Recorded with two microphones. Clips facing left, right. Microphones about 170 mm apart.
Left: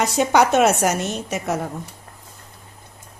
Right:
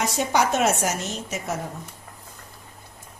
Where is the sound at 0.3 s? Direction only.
65° left (ahead or behind).